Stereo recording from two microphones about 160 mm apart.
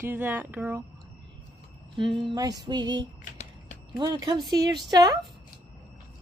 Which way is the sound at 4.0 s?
25° right (ahead or behind).